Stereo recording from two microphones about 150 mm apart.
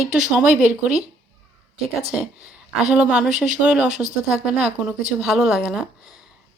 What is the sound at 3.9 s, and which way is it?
Speech, 50° right (ahead or behind).